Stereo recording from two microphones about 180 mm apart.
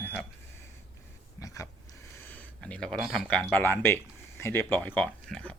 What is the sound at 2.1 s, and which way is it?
Speech, 10° left (ahead or behind).